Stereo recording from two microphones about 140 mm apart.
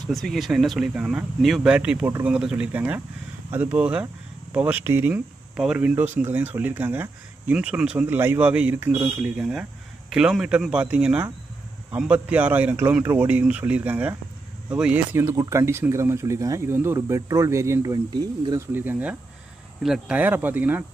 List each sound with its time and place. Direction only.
0.1 s speech: centre (ahead or behind); by 9.3 s 15° right (ahead or behind)
9.4 s speech: 5° right (ahead or behind)
15.1 s speech: 20° right (ahead or behind)